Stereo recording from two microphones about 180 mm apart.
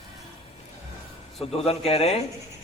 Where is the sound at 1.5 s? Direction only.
35° left (ahead or behind).